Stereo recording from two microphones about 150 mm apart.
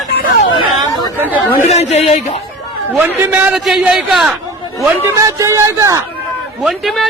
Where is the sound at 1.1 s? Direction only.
10° right (ahead or behind).